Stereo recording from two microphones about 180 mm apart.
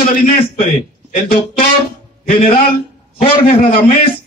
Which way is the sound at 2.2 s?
50° left (ahead or behind).